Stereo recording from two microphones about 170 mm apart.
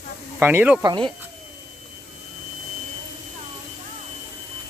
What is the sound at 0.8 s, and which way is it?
Speech, 25° right (ahead or behind).